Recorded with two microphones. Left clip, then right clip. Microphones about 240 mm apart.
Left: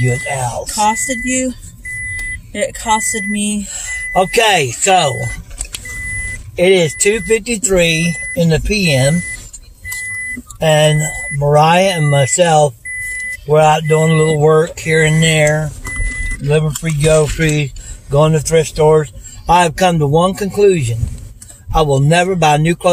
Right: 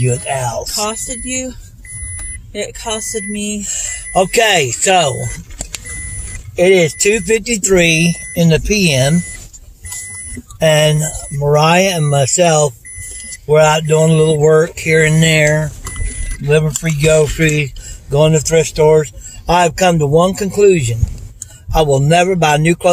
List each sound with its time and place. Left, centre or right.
0.0 s speech: right
0.7 s speech: centre
2.5 s speech: centre
3.7 s speech: centre
6.5 s speech: centre
10.6 s speech: right